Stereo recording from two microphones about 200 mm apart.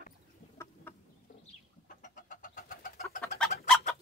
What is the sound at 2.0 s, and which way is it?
Vehicle, 40° left (ahead or behind).